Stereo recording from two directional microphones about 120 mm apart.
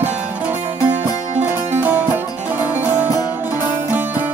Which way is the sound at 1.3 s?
70° right (ahead or behind).